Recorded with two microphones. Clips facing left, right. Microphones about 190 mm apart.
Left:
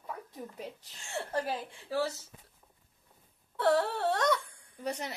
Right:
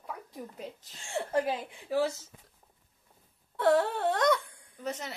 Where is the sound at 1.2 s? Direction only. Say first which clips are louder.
Right 4 dB; 10° right (ahead or behind).